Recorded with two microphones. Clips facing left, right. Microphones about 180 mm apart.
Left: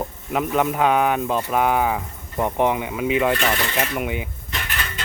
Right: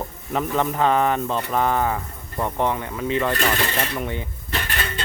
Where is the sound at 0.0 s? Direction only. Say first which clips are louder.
Left 2 dB; 10° left (ahead or behind).